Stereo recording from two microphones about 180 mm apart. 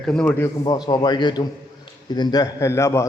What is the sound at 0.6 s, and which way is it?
A man's voice, 25° left (ahead or behind).